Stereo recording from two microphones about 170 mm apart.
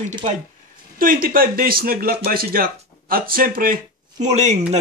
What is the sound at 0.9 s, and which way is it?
Speech, 55° right (ahead or behind).